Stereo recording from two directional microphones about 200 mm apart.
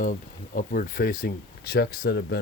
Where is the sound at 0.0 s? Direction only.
40° left (ahead or behind).